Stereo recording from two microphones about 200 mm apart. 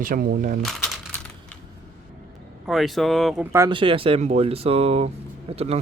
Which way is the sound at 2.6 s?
Centre (ahead or behind).